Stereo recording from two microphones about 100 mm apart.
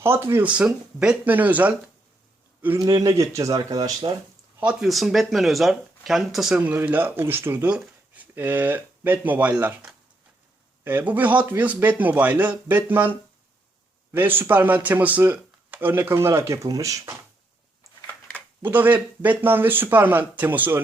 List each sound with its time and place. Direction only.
0.0 s speech: 25° right (ahead or behind)
0.4 s a man's voice: 10° right (ahead or behind)
2.8 s a man's voice: 40° right (ahead or behind)
3.6 s speech: 40° right (ahead or behind)
4.6 s speech: 10° right (ahead or behind)
6.6 s speech: 20° right (ahead or behind)
10.8 s a man's voice: 20° right (ahead or behind)
14.1 s speech: 20° right (ahead or behind)
18.0 s a sound: 20° left (ahead or behind)
18.6 s speech: 20° right (ahead or behind)